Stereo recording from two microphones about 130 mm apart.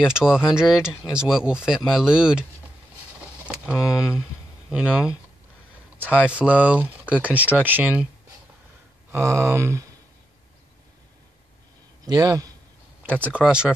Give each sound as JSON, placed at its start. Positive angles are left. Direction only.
{"t": 0.0, "sound": "speech", "side_deg": -5}
{"t": 3.4, "sound": "speech", "side_deg": -5}
{"t": 9.1, "sound": "a sound", "side_deg": -20}
{"t": 12.0, "sound": "a man's voice", "side_deg": -30}
{"t": 13.3, "sound": "speech", "side_deg": -5}